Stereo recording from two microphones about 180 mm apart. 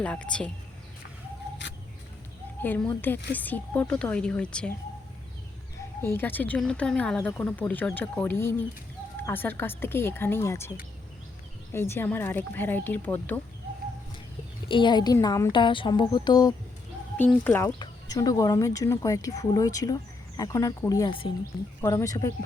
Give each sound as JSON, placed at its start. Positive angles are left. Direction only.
{"t": 0.0, "sound": "speech", "side_deg": 5}
{"t": 2.6, "sound": "speech", "side_deg": 10}
{"t": 6.0, "sound": "speech", "side_deg": 10}
{"t": 11.7, "sound": "speech", "side_deg": 10}
{"t": 14.7, "sound": "speech", "side_deg": 25}
{"t": 17.2, "sound": "speech", "side_deg": 10}
{"t": 17.7, "sound": "speech", "side_deg": 20}